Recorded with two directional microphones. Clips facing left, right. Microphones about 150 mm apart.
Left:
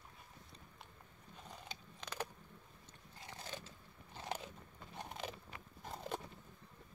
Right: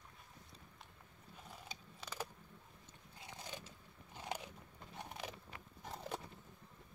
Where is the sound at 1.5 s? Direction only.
10° right (ahead or behind).